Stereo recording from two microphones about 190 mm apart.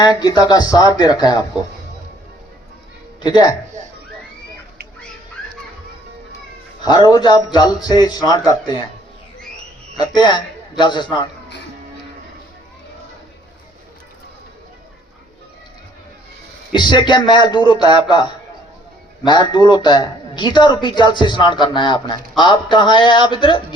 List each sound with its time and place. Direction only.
0.2 s speech: 20° left (ahead or behind)
3.2 s speech: 20° left (ahead or behind)
6.8 s speech: 20° left (ahead or behind)
10.0 s speech: 25° left (ahead or behind)
16.7 s speech: 25° left (ahead or behind)
19.2 s speech: 25° left (ahead or behind)